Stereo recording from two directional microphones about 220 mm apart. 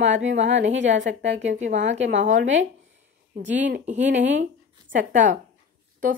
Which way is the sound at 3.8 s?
30° right (ahead or behind).